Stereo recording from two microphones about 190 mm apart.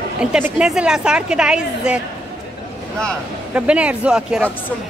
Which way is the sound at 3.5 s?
5° right (ahead or behind).